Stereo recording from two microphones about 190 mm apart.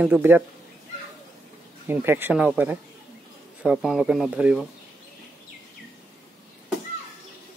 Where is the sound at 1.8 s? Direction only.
10° right (ahead or behind).